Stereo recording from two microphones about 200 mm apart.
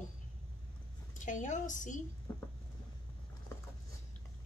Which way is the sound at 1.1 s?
40° left (ahead or behind).